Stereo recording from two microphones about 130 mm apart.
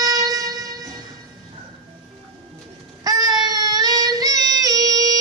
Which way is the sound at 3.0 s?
30° right (ahead or behind).